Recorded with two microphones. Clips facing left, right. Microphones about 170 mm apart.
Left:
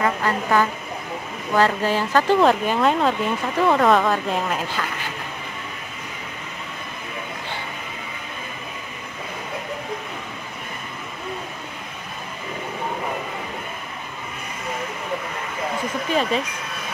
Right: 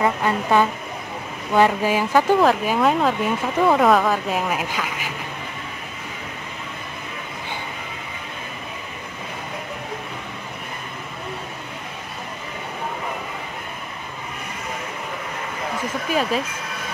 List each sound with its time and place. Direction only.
0.0 s a sound: 20° right (ahead or behind)
1.5 s speech: 15° right (ahead or behind)
16.1 s speech: 5° right (ahead or behind)